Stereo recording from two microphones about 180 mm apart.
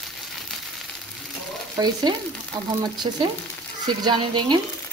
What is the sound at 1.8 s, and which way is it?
Speech, 25° right (ahead or behind).